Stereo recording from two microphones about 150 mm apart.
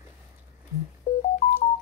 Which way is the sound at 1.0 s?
65° left (ahead or behind).